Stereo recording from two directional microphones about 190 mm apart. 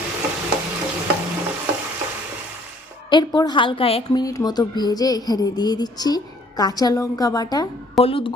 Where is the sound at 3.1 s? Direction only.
25° left (ahead or behind).